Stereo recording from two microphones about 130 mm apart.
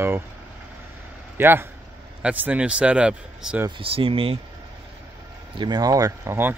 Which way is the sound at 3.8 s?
45° right (ahead or behind).